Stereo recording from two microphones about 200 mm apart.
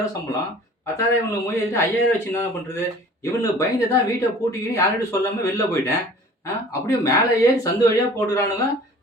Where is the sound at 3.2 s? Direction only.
15° left (ahead or behind).